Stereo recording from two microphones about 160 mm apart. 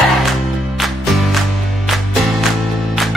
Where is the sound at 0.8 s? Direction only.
Centre (ahead or behind).